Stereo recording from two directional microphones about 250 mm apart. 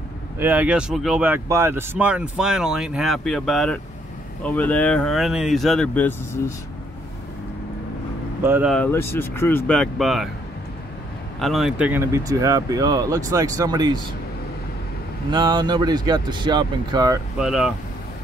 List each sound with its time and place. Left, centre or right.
0.4 s speech: centre
8.4 s speech: centre
8.7 s speech: centre
11.3 s speech: centre
15.3 s speech: centre
17.4 s speech: centre